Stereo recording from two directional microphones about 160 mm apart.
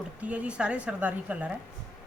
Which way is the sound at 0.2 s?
10° right (ahead or behind).